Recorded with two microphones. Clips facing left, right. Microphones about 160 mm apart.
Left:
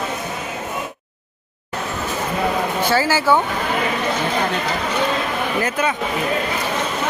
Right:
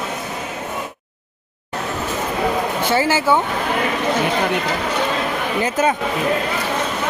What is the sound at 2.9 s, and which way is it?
Speech, 25° right (ahead or behind).